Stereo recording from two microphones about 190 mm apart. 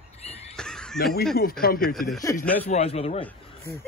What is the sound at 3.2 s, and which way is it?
Speech, 15° left (ahead or behind).